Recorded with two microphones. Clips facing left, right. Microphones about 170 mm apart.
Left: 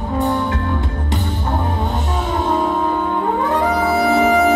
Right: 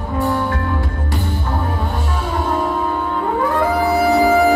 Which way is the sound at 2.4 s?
20° left (ahead or behind).